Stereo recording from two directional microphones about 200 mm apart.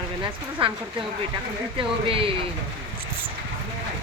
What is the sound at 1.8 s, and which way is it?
Speech, 25° right (ahead or behind).